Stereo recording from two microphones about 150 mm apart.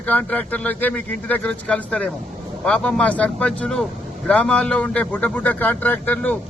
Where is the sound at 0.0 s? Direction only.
10° left (ahead or behind).